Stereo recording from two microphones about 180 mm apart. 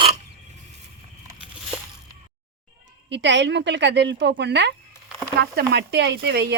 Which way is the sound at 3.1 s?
80° right.